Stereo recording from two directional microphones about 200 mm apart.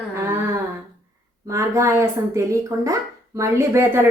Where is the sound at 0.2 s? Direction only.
10° right (ahead or behind).